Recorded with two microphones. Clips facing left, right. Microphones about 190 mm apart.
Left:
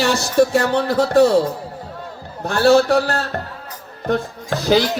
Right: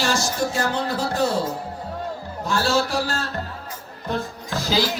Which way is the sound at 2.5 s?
60° left (ahead or behind).